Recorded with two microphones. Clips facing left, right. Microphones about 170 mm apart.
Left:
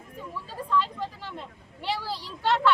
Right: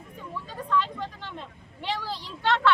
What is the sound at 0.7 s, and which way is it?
Speech, 10° left (ahead or behind).